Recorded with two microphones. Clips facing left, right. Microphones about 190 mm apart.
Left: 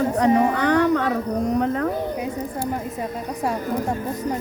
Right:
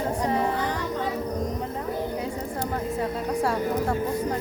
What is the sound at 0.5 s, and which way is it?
Speech, 75° left (ahead or behind).